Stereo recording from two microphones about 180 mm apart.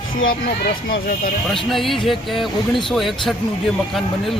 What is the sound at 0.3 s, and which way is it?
Speech, 55° left (ahead or behind).